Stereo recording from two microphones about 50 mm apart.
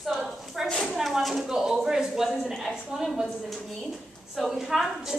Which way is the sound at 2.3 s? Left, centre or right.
Centre.